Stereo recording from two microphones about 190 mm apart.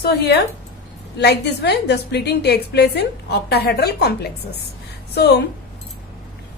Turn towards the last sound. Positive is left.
turn(degrees=60)  # may be behind; listen again after turning